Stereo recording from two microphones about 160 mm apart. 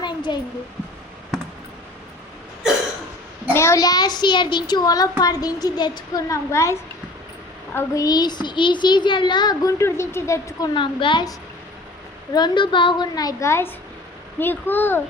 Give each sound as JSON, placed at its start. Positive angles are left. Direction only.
{"t": 0.0, "sound": "a sound", "side_deg": 30}
{"t": 3.5, "sound": "a child's voice", "side_deg": 15}
{"t": 10.8, "sound": "a woman's voice", "side_deg": 30}